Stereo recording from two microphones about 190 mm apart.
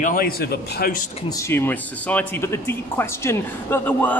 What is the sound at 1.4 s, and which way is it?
Speech, 10° left (ahead or behind).